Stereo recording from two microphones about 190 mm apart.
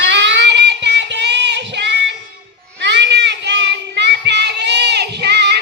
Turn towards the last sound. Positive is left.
turn(degrees=-60)  # may be behind; listen again after turning